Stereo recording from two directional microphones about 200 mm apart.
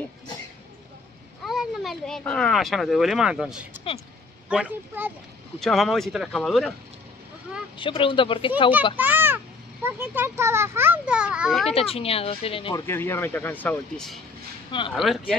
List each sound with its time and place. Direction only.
1.4 s a child's voice: centre (ahead or behind)
7.7 s speech: 25° left (ahead or behind)
8.9 s a child's voice: 10° right (ahead or behind)
11.7 s speech: 30° left (ahead or behind)
12.8 s speech: 10° left (ahead or behind)
14.7 s speech: 25° left (ahead or behind)